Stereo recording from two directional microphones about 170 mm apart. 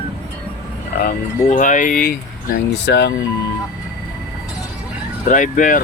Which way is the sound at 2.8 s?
80° left.